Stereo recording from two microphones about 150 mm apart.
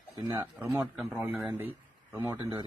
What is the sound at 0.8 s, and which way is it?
Speech, 10° right (ahead or behind).